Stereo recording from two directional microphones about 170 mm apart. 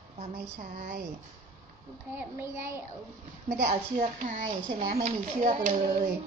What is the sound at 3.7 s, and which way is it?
A child's voice, 45° right (ahead or behind).